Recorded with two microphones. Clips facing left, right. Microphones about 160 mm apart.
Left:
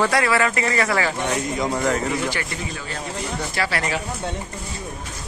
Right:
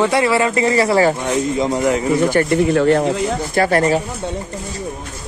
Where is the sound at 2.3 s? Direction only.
55° right (ahead or behind); by 3.2 s 75° right (ahead or behind).